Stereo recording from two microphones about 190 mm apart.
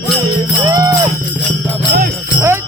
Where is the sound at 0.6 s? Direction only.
15° right (ahead or behind).